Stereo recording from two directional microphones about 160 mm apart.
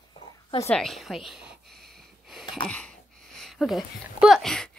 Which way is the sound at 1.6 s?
75° right (ahead or behind).